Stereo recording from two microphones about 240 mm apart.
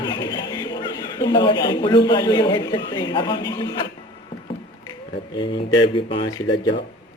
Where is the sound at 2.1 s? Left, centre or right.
Centre.